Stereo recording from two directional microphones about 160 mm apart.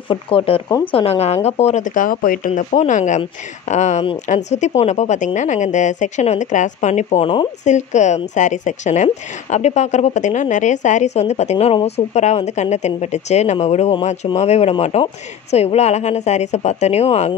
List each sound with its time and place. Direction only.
0.1 s a woman's voice: 35° left (ahead or behind)